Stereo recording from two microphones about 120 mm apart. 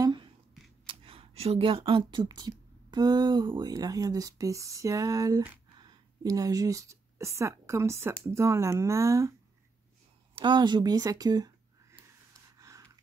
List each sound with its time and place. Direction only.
0.8 s speech: 50° right (ahead or behind); by 9.3 s 25° right (ahead or behind)
10.3 s speech: 40° right (ahead or behind)
12.5 s a sound: 25° right (ahead or behind)